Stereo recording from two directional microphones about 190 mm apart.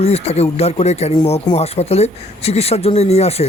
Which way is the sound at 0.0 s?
35° left (ahead or behind).